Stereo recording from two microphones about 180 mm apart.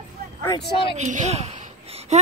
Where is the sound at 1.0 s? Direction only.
40° right (ahead or behind).